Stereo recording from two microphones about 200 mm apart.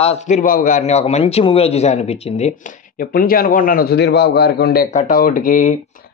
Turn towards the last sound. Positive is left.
turn(degrees=45)  # may be behind; listen again after turning